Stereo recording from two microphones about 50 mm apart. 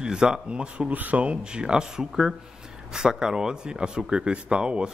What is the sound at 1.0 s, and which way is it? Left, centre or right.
A man's voice, right.